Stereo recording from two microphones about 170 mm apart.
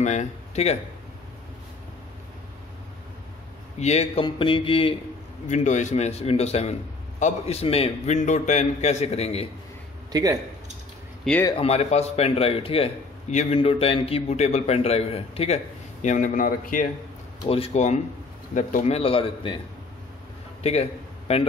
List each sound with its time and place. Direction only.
0.0 s speech: 45° left (ahead or behind)
3.8 s a man's voice: 40° left (ahead or behind)
5.5 s a man's voice: 45° left (ahead or behind)
11.5 s a man's voice: 40° left (ahead or behind)
17.4 s a man's voice: 35° left (ahead or behind)
20.6 s a man's voice: 35° left (ahead or behind)